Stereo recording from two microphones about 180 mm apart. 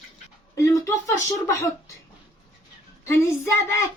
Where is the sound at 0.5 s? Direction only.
15° left (ahead or behind).